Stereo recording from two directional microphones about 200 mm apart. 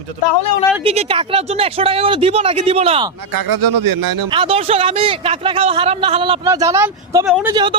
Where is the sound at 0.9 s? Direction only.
30° right (ahead or behind).